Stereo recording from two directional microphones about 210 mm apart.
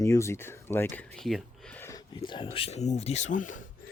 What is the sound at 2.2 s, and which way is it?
Speech, 25° left (ahead or behind).